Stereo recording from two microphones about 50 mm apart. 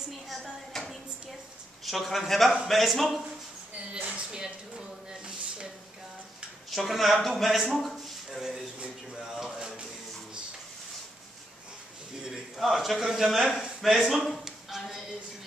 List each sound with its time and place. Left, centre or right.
0.3 s a man's voice: centre
3.9 s speech: centre
6.7 s speech: centre
8.7 s speech: right
9.2 s a sound: centre
12.5 s a man's voice: centre
13.7 s a sound: centre